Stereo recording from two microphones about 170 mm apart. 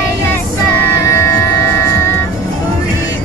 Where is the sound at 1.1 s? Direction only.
15° left (ahead or behind).